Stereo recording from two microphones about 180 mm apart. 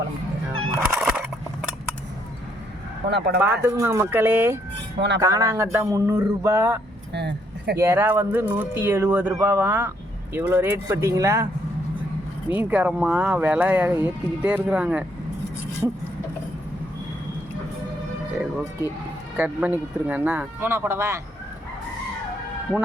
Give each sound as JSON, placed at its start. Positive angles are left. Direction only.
{"t": 0.9, "sound": "fowl", "side_deg": -10}
{"t": 3.1, "sound": "speech", "side_deg": -70}
{"t": 3.4, "sound": "speech", "side_deg": -15}
{"t": 4.9, "sound": "speech", "side_deg": -75}
{"t": 5.2, "sound": "speech", "side_deg": -15}
{"t": 7.1, "sound": "keys jangling", "side_deg": -70}
{"t": 7.8, "sound": "speech", "side_deg": -15}
{"t": 12.5, "sound": "speech", "side_deg": -10}
{"t": 19.4, "sound": "speech", "side_deg": -10}